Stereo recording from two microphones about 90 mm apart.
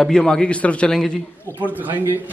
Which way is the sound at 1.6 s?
20° right (ahead or behind).